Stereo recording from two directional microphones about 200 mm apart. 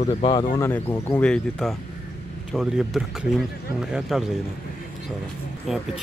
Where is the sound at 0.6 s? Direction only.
10° left (ahead or behind).